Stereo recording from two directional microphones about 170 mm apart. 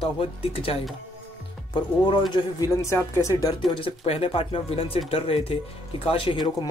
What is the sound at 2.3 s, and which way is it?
Speech, 20° left (ahead or behind).